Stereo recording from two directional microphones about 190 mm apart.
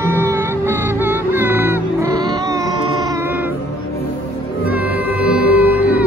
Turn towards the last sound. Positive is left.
turn(degrees=-10)  # may be behind; listen again after turning